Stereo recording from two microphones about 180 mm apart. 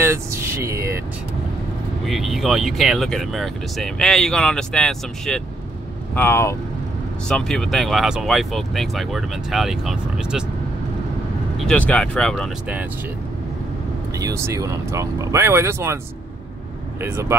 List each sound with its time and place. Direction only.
0.0 s a sound: 15° right (ahead or behind)
2.0 s speech: centre (ahead or behind)
11.5 s speech: 5° left (ahead or behind)
14.1 s speech: 15° right (ahead or behind)
17.0 s speech: 15° right (ahead or behind)